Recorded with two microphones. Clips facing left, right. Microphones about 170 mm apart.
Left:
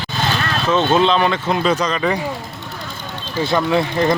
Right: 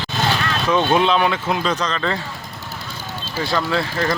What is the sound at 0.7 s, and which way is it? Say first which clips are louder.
Speech: left 2 dB; 10° right (ahead or behind).